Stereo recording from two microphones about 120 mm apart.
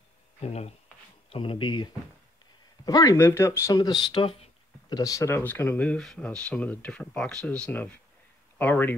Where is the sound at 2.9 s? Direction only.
30° left (ahead or behind); by 4.4 s 50° left (ahead or behind).